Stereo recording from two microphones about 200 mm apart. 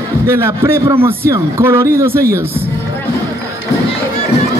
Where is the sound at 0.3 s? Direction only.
10° right (ahead or behind).